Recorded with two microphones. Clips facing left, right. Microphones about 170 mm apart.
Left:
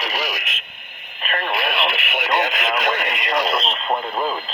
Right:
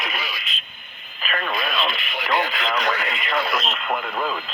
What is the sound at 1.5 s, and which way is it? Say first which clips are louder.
Speech: left 3 dB; 70° left (ahead or behind).